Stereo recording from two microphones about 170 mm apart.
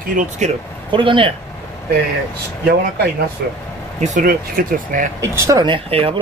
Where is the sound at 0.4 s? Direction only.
45° right (ahead or behind).